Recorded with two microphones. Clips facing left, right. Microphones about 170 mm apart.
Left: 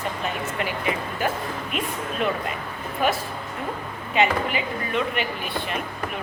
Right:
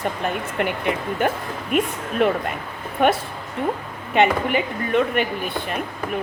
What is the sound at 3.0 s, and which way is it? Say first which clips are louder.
Speech: right 5 dB; 65° right (ahead or behind).